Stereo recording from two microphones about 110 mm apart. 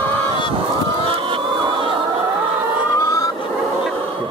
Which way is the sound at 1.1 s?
50° right (ahead or behind).